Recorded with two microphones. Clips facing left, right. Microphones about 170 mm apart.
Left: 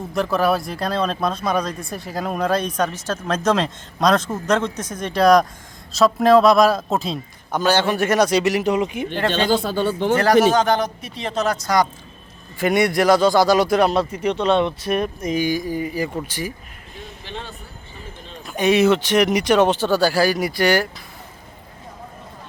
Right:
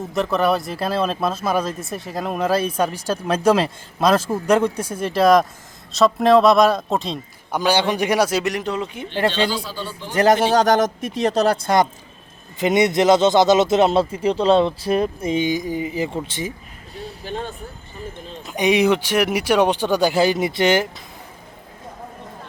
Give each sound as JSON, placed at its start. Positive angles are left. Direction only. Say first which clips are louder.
{"t": 0.1, "sound": "speech", "louder": "even", "side_deg": 0}
{"t": 7.5, "sound": "speech", "louder": "even", "side_deg": -10}
{"t": 9.3, "sound": "speech", "louder": "left 4 dB", "side_deg": 50}
{"t": 10.2, "sound": "speech", "louder": "right 1 dB", "side_deg": -20}
{"t": 10.5, "sound": "speech", "louder": "right 2 dB", "side_deg": -40}
{"t": 17.0, "sound": "a sound", "louder": "right 5 dB", "side_deg": -45}
{"t": 18.4, "sound": "speech", "louder": "left 1 dB", "side_deg": -15}